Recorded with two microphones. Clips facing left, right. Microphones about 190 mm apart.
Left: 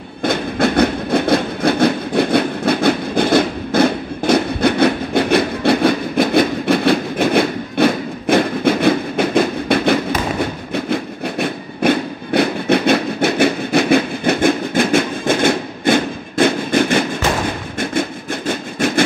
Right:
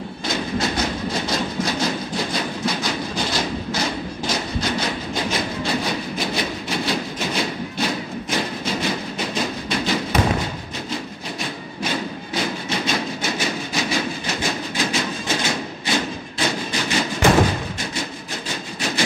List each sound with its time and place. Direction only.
0.2 s train: 60° left (ahead or behind)
18.5 s train: 55° left (ahead or behind)